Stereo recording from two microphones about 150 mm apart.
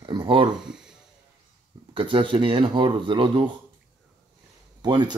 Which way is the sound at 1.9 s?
35° right (ahead or behind).